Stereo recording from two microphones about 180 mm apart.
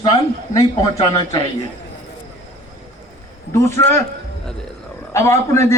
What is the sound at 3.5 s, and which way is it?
Speech, 15° left (ahead or behind).